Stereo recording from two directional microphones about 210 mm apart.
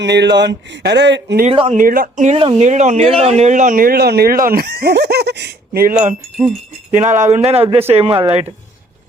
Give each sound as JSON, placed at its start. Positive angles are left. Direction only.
{"t": 0.0, "sound": "speech", "side_deg": -55}
{"t": 1.5, "sound": "speech", "side_deg": -30}
{"t": 1.8, "sound": "speech", "side_deg": -40}